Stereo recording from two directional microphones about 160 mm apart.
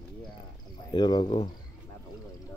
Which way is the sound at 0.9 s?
30° left (ahead or behind).